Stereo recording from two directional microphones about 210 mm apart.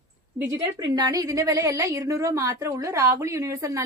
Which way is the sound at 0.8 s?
20° right (ahead or behind).